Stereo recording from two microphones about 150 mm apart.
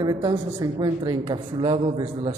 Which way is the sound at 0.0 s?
25° right (ahead or behind).